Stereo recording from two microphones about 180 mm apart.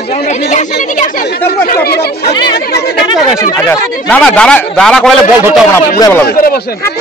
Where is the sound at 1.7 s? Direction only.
60° left (ahead or behind).